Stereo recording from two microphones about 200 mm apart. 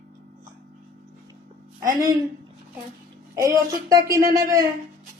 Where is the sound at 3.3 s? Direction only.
15° right (ahead or behind).